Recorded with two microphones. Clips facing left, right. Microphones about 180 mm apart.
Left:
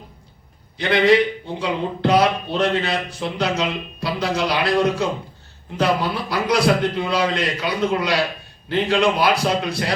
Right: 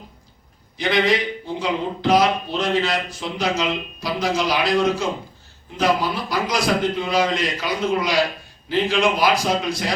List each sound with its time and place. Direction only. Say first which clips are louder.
0.8 s speech: left 4 dB; 60° left (ahead or behind)